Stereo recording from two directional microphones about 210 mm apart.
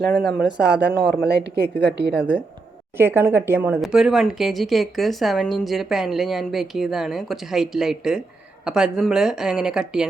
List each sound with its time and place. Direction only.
0.2 s speech: centre (ahead or behind)
1.3 s a woman's voice: 50° right (ahead or behind)
2.1 s speech: 5° right (ahead or behind)